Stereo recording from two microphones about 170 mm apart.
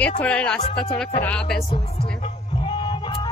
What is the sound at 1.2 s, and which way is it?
Music, 10° left (ahead or behind).